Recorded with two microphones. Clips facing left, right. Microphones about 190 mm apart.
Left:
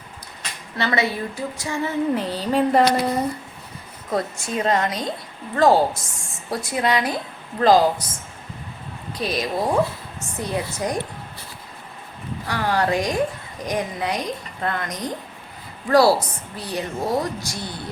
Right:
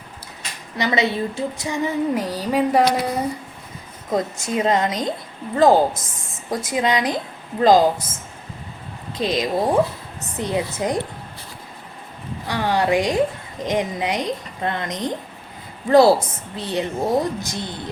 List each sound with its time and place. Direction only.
0.8 s female singing: 20° right (ahead or behind)
4.1 s a woman's voice: 20° right (ahead or behind)
9.1 s a woman's voice: 20° right (ahead or behind)
12.5 s a woman's voice: 20° right (ahead or behind)